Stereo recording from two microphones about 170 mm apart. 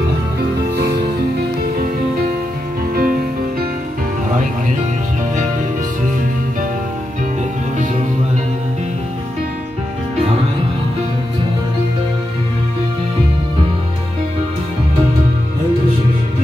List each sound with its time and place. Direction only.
2.9 s music: 60° right (ahead or behind)